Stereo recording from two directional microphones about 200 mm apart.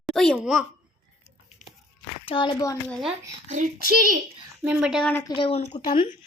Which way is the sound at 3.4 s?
35° right (ahead or behind).